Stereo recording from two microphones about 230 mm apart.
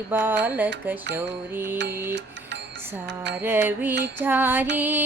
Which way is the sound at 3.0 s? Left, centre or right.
Right.